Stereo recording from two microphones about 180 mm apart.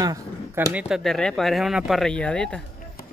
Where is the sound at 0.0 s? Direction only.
20° right (ahead or behind).